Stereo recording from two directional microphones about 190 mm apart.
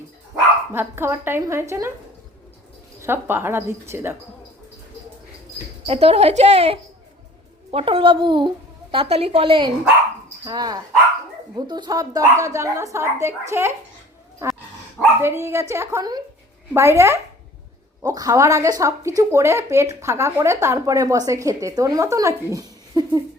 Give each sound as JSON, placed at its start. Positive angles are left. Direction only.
{"t": 0.7, "sound": "speech", "side_deg": -10}
{"t": 3.0, "sound": "speech", "side_deg": -10}
{"t": 5.8, "sound": "a child's voice", "side_deg": -30}
{"t": 15.2, "sound": "speech", "side_deg": -15}